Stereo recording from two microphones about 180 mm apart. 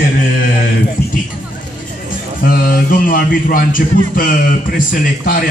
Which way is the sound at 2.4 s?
55° left (ahead or behind).